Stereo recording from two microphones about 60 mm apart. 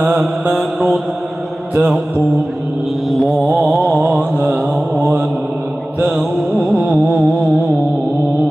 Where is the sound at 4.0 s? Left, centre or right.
Right.